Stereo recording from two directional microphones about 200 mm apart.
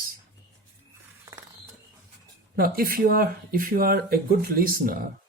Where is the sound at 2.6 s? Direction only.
45° right (ahead or behind).